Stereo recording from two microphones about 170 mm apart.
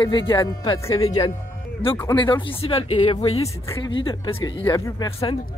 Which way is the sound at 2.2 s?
30° left (ahead or behind).